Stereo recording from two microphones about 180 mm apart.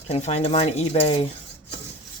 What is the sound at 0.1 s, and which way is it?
Speech, 35° left (ahead or behind).